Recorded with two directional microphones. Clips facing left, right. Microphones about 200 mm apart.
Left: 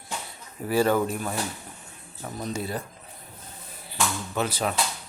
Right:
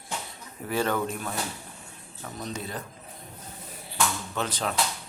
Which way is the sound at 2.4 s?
10° left (ahead or behind).